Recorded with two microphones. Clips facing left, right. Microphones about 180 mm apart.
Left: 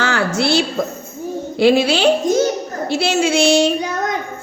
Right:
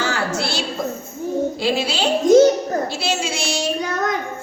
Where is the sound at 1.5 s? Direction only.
65° left (ahead or behind).